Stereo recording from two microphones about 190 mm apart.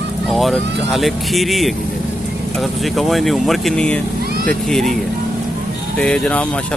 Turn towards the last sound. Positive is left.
turn(degrees=5)  # may be behind; listen again after turning